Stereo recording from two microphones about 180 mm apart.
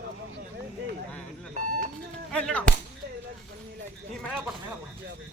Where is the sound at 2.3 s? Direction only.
5° left (ahead or behind).